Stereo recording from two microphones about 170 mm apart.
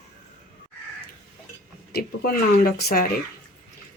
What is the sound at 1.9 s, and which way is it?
Speech, 65° left (ahead or behind).